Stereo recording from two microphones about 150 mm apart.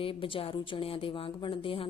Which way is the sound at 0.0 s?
35° left (ahead or behind).